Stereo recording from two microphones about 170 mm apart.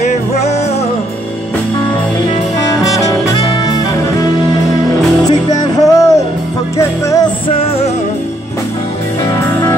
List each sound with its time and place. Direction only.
0.3 s music: 40° left (ahead or behind)
2.7 s saxophone: 20° left (ahead or behind)
5.3 s music: 20° left (ahead or behind)
7.4 s music: 35° left (ahead or behind)